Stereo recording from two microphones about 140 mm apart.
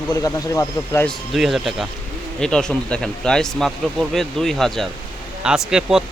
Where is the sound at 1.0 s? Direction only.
Centre (ahead or behind).